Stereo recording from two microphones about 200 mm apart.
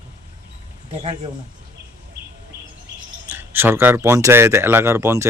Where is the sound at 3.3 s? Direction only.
10° right (ahead or behind).